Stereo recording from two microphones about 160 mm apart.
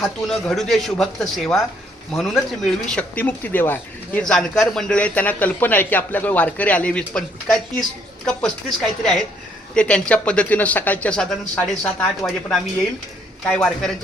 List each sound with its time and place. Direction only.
0.0 s a man's voice: centre (ahead or behind)
9.7 s a man's voice: 5° left (ahead or behind)